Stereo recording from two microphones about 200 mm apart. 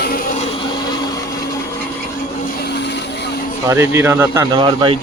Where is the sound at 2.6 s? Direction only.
60° left (ahead or behind).